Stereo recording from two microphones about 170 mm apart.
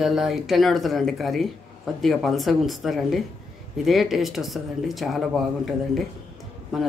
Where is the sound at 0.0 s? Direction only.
Centre (ahead or behind).